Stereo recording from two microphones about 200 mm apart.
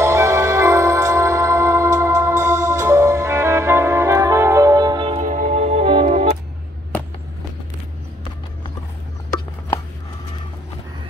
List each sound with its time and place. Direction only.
0.0 s music: 15° right (ahead or behind)
5.2 s music: 40° right (ahead or behind)